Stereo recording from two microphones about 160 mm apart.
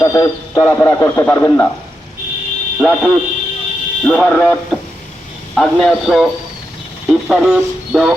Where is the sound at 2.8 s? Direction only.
Centre (ahead or behind).